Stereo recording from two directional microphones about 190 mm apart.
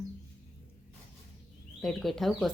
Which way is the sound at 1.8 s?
Centre (ahead or behind).